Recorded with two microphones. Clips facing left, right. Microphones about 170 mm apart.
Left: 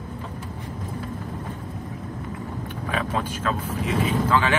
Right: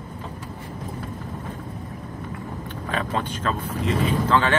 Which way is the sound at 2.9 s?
5° left (ahead or behind).